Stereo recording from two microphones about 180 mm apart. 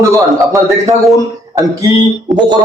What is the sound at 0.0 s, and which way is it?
Speech, 15° right (ahead or behind).